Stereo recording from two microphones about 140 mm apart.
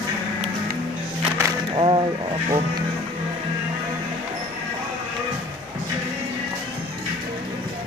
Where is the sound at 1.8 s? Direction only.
35° right (ahead or behind).